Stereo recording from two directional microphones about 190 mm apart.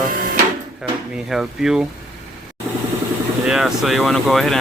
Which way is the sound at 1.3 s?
Centre (ahead or behind).